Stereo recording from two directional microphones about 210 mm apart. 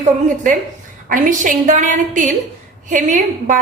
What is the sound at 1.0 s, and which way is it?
A woman's voice, 40° right (ahead or behind).